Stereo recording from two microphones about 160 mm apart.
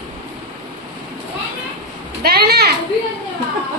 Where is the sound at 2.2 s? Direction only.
75° right (ahead or behind).